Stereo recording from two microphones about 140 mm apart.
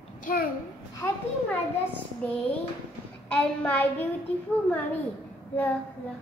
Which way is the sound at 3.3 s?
10° left (ahead or behind).